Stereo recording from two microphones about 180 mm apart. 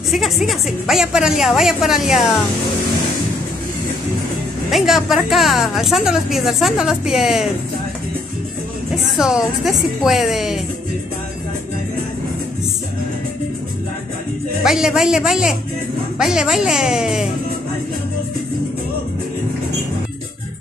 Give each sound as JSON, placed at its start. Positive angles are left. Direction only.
{"t": 0.1, "sound": "a woman's voice", "side_deg": 0}
{"t": 4.6, "sound": "a woman's voice", "side_deg": 0}
{"t": 9.1, "sound": "a woman's voice", "side_deg": 0}
{"t": 14.6, "sound": "a woman's voice", "side_deg": -5}